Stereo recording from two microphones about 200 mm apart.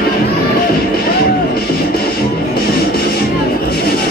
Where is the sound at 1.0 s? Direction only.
50° left (ahead or behind).